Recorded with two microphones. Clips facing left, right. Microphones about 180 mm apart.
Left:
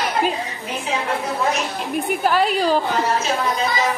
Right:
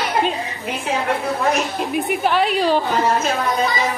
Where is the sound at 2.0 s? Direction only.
Centre (ahead or behind).